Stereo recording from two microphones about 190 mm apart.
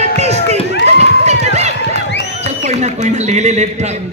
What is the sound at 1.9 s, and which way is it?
Crowd, 65° left (ahead or behind).